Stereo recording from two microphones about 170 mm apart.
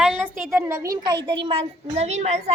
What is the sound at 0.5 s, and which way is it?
A woman's voice, 15° right (ahead or behind).